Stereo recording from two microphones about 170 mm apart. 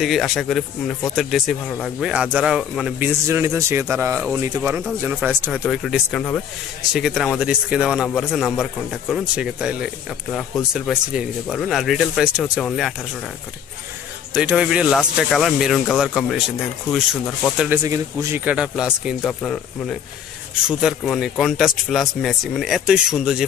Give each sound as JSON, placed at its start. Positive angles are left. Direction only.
{"t": 0.0, "sound": "speech", "side_deg": 0}
{"t": 3.3, "sound": "speech", "side_deg": -15}
{"t": 14.3, "sound": "speech", "side_deg": -5}
{"t": 17.8, "sound": "speech", "side_deg": -15}